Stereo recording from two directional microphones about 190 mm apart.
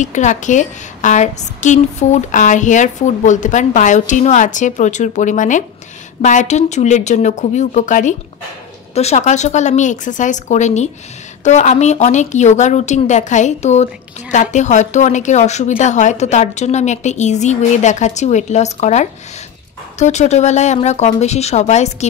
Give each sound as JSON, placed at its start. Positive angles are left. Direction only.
{"t": 0.0, "sound": "a woman's voice", "side_deg": 40}